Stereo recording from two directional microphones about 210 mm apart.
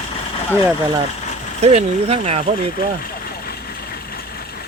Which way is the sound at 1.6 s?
30° right (ahead or behind).